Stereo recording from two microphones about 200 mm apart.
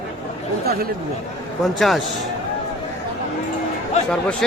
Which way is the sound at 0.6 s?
50° right (ahead or behind).